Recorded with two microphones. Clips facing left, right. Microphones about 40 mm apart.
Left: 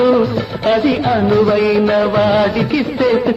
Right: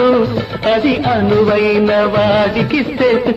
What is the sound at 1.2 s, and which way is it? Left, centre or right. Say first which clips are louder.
Music of bollywood: right 1 dB; right.